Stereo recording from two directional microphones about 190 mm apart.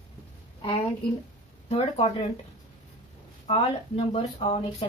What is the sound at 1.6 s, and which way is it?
Speech, 35° left (ahead or behind).